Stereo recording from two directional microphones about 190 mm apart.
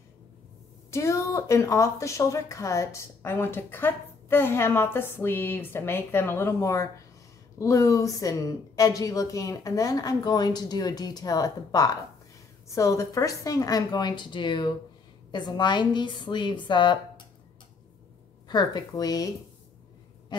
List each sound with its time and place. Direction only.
0.9 s a woman's voice: 15° left (ahead or behind)
18.5 s a woman's voice: 20° left (ahead or behind)